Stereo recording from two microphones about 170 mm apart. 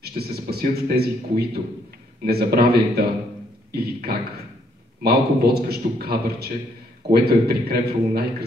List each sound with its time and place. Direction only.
0.0 s a man's voice: 65° right (ahead or behind)
5.0 s a man's voice: 65° right (ahead or behind)